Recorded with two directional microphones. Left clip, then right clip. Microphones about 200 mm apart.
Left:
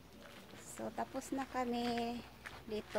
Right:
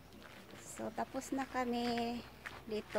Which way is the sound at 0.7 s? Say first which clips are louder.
Right 1 dB; 5° right (ahead or behind).